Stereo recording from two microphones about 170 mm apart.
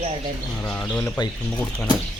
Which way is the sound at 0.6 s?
10° left (ahead or behind).